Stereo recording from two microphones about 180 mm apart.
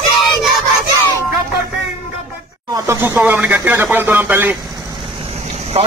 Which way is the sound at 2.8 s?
10° right (ahead or behind).